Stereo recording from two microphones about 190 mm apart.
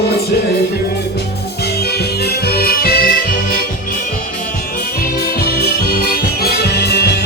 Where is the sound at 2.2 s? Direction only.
55° left (ahead or behind).